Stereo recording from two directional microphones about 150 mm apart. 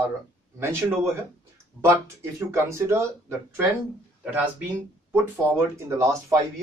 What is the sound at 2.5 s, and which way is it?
Speech, 20° right (ahead or behind).